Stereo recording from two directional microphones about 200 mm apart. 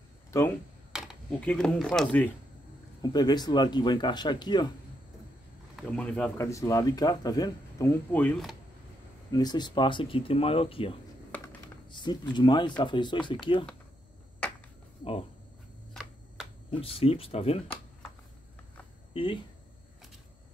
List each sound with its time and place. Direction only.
0.3 s speech: 15° left (ahead or behind)
0.9 s speech: centre (ahead or behind)
3.0 s speech: 20° left (ahead or behind)
5.9 s speech: 5° left (ahead or behind)
9.3 s speech: 20° left (ahead or behind)
14.4 s a sound: 5° left (ahead or behind)
15.9 s a sound: centre (ahead or behind)
16.7 s speech: 30° left (ahead or behind)
19.1 s speech: 25° left (ahead or behind)